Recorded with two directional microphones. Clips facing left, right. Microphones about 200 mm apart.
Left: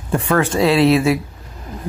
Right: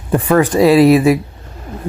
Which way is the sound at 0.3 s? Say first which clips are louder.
Right 5 dB; 15° right (ahead or behind).